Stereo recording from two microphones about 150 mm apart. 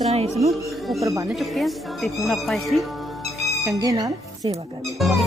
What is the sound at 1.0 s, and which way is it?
Speech, 20° right (ahead or behind).